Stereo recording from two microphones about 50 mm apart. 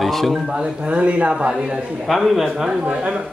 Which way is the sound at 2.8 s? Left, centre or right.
Right.